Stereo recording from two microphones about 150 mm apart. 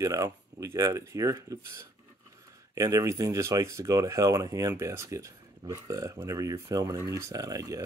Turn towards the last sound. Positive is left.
turn(degrees=-25)  # may be behind; listen again after turning